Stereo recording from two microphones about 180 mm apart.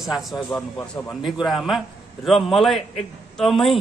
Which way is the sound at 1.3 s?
Centre (ahead or behind).